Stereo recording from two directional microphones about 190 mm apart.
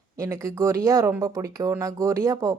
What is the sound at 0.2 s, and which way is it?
Speech, 15° right (ahead or behind).